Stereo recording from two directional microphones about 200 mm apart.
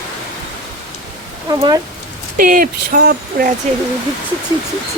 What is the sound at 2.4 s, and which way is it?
Speech, 45° right (ahead or behind).